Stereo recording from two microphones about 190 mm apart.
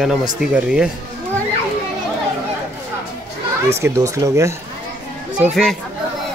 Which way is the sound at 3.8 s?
15° right (ahead or behind).